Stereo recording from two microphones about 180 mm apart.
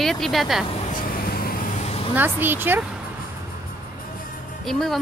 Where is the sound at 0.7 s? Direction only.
40° left (ahead or behind).